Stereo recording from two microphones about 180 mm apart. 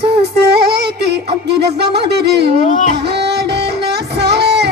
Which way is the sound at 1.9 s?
65° right (ahead or behind).